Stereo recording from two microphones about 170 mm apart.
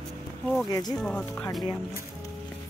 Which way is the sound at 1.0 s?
5° left (ahead or behind).